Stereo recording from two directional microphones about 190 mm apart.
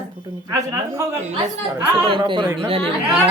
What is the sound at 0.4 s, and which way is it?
Speech, 15° right (ahead or behind).